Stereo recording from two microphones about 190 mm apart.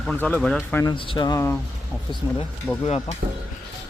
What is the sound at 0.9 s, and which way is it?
Speech, 25° left (ahead or behind).